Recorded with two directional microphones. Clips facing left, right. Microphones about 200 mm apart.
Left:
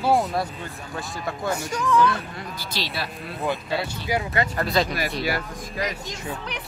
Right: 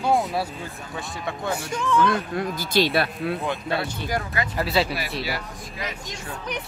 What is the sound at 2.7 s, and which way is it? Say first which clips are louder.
Speech: right 10 dB; 55° right (ahead or behind).